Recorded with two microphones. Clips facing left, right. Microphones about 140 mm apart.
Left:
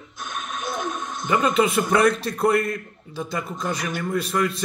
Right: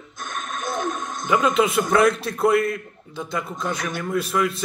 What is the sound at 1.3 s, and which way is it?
A man's voice, centre (ahead or behind).